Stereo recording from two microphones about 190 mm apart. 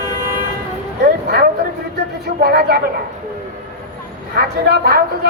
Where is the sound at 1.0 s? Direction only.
55° right (ahead or behind).